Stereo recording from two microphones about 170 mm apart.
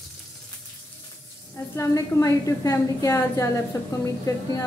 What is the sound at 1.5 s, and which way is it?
A woman's voice, 20° left (ahead or behind).